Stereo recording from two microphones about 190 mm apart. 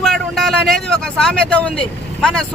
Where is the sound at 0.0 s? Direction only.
Centre (ahead or behind).